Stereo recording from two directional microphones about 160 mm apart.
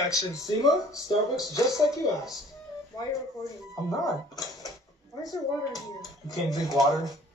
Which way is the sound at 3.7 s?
20° left (ahead or behind).